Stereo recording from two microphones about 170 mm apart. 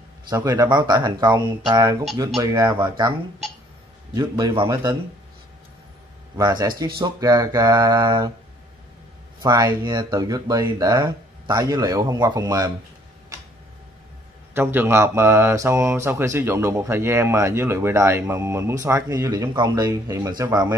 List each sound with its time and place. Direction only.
0.3 s speech: 20° right (ahead or behind)
6.3 s speech: 20° right (ahead or behind)
9.4 s speech: 20° right (ahead or behind)
14.5 s speech: 15° right (ahead or behind)